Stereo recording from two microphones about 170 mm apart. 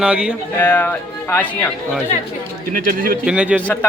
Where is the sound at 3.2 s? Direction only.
5° right (ahead or behind).